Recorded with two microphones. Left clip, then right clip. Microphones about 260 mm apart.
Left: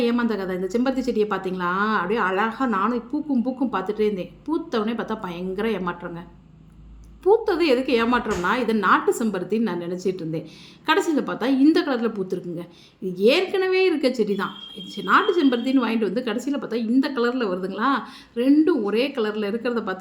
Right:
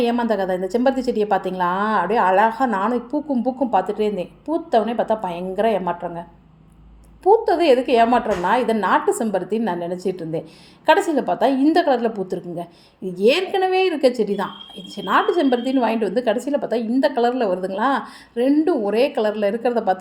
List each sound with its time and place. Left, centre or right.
0.0 s a woman's voice: centre
3.1 s a woman's voice: centre
3.8 s a woman's voice: centre
7.3 s a woman's voice: centre
13.1 s a woman's voice: centre